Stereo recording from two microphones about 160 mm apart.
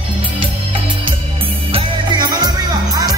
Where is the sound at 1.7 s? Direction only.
25° right (ahead or behind).